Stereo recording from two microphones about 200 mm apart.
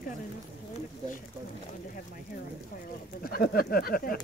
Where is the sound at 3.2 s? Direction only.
45° left (ahead or behind).